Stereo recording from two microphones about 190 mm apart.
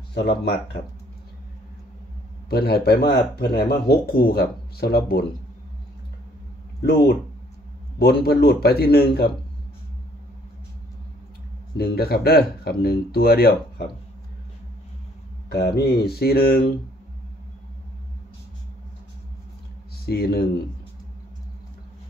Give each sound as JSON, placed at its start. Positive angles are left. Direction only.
{"t": 0.1, "sound": "speech", "side_deg": 55}
{"t": 2.5, "sound": "speech", "side_deg": 55}
{"t": 6.8, "sound": "speech", "side_deg": 55}
{"t": 11.7, "sound": "speech", "side_deg": 55}
{"t": 15.5, "sound": "speech", "side_deg": 55}
{"t": 20.1, "sound": "speech", "side_deg": 55}